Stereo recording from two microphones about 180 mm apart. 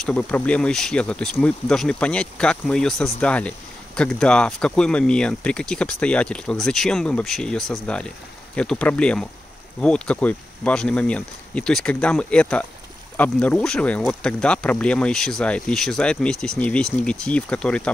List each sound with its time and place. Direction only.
0.0 s speech: 5° left (ahead or behind)